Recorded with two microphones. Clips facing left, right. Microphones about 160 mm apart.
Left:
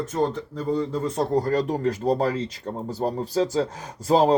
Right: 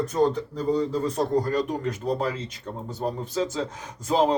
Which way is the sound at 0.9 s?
25° left (ahead or behind).